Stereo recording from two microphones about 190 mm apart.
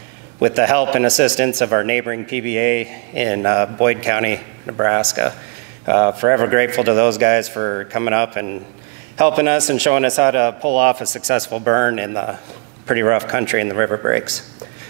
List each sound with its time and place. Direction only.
0.4 s a man's voice: 20° right (ahead or behind)